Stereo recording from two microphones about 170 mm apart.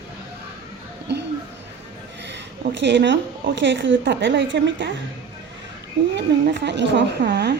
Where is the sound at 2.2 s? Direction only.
90° right.